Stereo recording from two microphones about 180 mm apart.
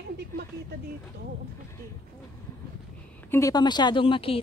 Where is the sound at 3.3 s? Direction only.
20° left (ahead or behind).